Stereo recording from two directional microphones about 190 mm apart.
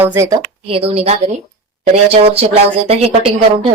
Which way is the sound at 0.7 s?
30° right (ahead or behind).